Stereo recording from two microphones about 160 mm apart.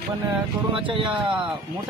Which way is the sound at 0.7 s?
35° right (ahead or behind).